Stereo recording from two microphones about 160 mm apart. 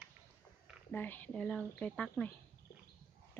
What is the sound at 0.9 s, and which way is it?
Speech, 10° left (ahead or behind).